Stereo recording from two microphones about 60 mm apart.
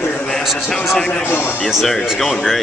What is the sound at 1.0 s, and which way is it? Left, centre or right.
Speech, left.